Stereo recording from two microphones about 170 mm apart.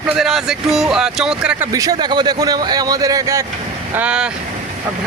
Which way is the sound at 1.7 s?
20° right (ahead or behind).